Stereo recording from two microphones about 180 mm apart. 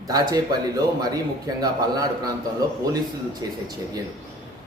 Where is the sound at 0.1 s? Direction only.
20° right (ahead or behind).